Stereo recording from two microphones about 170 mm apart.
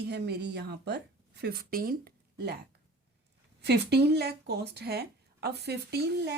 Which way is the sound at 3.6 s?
75° right (ahead or behind).